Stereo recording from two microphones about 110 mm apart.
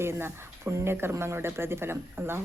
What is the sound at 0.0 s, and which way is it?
Speech, 20° right (ahead or behind).